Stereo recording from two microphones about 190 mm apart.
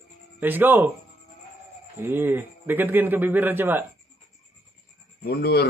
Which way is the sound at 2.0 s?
10° right (ahead or behind).